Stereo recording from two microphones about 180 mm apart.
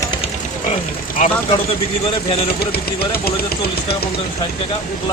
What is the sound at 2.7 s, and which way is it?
Speech, 60° left (ahead or behind).